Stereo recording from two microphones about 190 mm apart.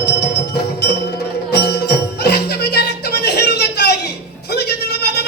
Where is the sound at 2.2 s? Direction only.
60° left (ahead or behind).